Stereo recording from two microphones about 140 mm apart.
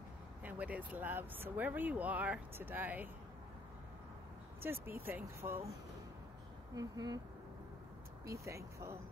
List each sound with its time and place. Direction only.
0.4 s speech: 10° right (ahead or behind)
4.6 s speech: 15° right (ahead or behind)
6.7 s speech: 25° right (ahead or behind)
8.5 s speech: 20° right (ahead or behind)